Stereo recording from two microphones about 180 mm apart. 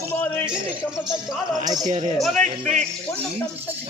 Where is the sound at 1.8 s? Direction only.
40° right (ahead or behind).